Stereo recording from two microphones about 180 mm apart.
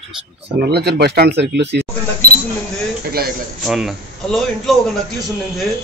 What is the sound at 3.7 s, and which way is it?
Speech, 5° right (ahead or behind).